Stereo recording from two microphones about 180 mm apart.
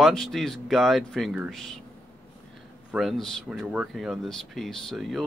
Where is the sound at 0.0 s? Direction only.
Centre (ahead or behind).